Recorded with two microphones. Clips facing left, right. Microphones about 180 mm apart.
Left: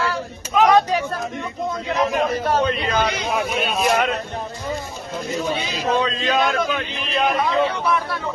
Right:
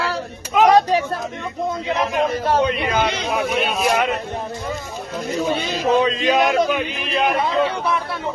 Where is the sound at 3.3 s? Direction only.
Centre (ahead or behind).